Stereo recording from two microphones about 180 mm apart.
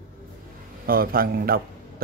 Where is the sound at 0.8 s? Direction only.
55° right (ahead or behind).